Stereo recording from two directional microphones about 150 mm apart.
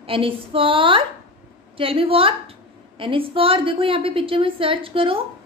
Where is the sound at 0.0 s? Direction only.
35° right (ahead or behind).